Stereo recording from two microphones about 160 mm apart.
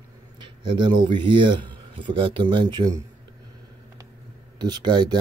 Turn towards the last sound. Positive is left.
turn(degrees=-25)  # may be behind; listen again after turning